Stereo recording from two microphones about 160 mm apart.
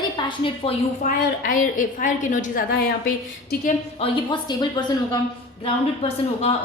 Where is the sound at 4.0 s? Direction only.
30° left (ahead or behind).